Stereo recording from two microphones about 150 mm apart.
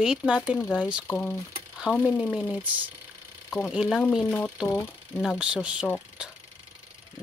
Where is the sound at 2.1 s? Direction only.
5° left (ahead or behind).